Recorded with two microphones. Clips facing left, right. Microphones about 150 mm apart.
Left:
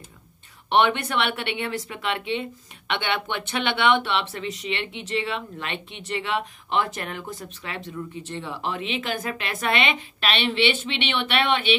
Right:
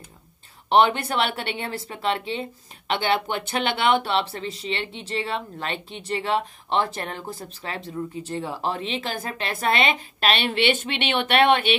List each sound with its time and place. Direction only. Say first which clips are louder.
0.7 s speech: right 2 dB; 35° right (ahead or behind)